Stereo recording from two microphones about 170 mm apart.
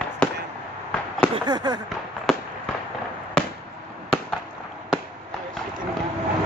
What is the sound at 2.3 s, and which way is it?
Fireworks, centre (ahead or behind).